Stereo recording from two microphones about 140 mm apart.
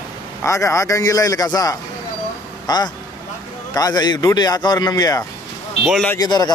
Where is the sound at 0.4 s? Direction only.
20° left (ahead or behind).